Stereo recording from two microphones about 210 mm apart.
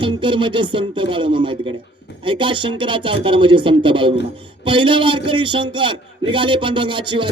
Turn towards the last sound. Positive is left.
turn(degrees=-25)  # may be behind; listen again after turning